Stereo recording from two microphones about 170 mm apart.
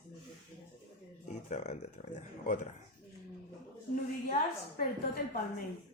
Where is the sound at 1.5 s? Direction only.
40° left (ahead or behind).